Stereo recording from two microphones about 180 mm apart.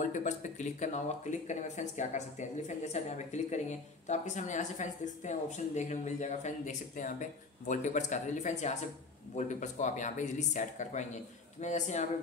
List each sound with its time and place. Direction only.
0.0 s speech: 40° left (ahead or behind)